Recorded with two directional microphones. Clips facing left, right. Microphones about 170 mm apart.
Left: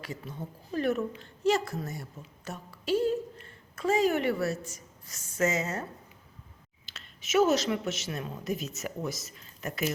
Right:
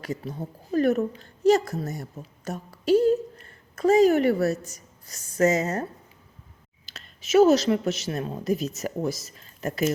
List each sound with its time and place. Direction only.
0.0 s a woman's voice: 40° right (ahead or behind)
6.8 s a woman's voice: 35° right (ahead or behind)